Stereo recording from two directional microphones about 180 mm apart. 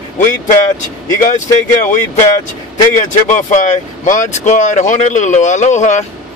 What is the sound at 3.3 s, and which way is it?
Speech, 45° left (ahead or behind).